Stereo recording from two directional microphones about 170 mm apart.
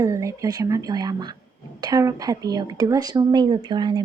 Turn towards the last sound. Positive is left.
turn(degrees=-25)  # may be behind; listen again after turning